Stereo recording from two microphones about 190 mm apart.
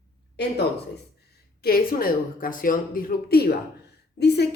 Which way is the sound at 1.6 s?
50° left (ahead or behind).